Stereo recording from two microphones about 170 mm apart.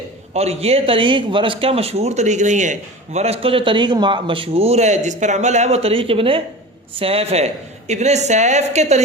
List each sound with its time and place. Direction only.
0.3 s speech: 35° right (ahead or behind)